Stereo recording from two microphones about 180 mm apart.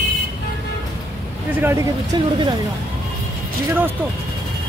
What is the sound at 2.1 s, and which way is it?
Speech, 25° right (ahead or behind).